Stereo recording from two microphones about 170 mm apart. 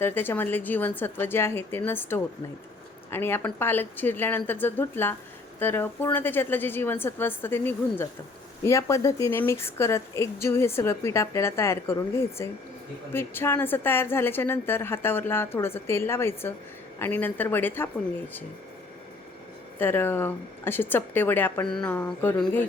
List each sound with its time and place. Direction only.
0.0 s a woman's voice: 10° left (ahead or behind)
19.8 s a woman's voice: 10° left (ahead or behind)